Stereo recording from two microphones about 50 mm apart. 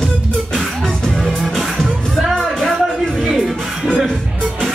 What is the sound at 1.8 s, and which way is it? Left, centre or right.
Music, centre.